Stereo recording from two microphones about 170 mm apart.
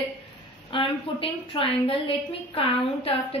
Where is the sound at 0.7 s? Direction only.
30° left (ahead or behind).